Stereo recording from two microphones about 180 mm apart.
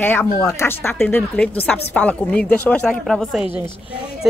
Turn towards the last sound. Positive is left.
turn(degrees=0)  # may be behind; listen again after turning